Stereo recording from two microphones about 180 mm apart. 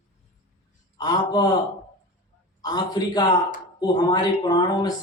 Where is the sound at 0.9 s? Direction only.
20° left (ahead or behind).